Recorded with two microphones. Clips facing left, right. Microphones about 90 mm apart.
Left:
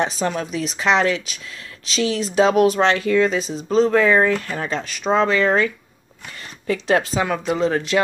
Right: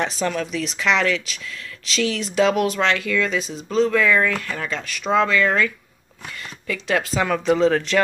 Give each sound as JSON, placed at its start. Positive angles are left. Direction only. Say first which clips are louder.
{"t": 0.0, "sound": "speech", "louder": "left 1 dB", "side_deg": 25}
{"t": 6.7, "sound": "speech", "louder": "left 4 dB", "side_deg": 30}
{"t": 7.2, "sound": "speech", "louder": "right 2 dB", "side_deg": 10}